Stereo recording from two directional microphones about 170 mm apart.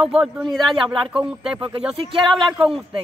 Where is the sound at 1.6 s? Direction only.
30° right (ahead or behind).